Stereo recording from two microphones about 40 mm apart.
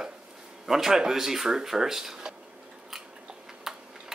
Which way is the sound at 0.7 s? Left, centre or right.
Centre.